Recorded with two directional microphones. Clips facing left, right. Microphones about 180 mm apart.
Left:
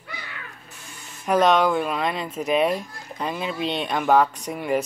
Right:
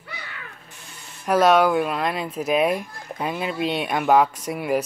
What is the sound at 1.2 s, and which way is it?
Speech, 5° right (ahead or behind).